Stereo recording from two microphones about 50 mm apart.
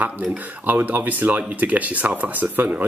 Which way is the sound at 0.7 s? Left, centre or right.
Right.